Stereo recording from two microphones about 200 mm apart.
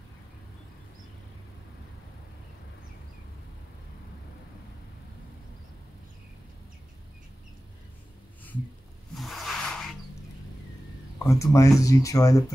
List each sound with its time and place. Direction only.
9.1 s snake: centre (ahead or behind)
11.2 s speech: 15° left (ahead or behind)